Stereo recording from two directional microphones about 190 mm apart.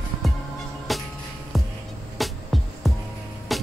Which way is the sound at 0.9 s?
Centre (ahead or behind).